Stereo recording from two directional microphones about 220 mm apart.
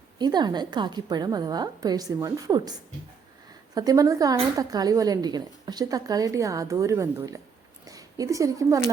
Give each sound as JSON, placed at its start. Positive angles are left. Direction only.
{"t": 0.2, "sound": "speech", "side_deg": -20}
{"t": 3.8, "sound": "speech", "side_deg": -15}